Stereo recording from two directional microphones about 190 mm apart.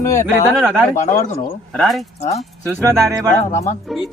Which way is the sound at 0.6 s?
10° right (ahead or behind).